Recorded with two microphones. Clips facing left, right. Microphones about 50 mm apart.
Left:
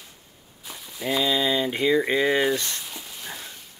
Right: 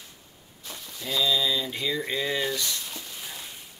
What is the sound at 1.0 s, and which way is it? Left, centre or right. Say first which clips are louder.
Speech: left 3 dB; left.